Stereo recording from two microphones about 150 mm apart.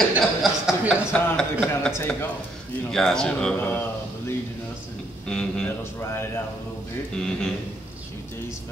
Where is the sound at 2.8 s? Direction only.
5° left (ahead or behind).